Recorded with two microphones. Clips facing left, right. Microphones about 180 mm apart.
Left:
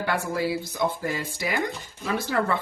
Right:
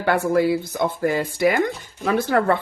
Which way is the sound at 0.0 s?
55° right (ahead or behind).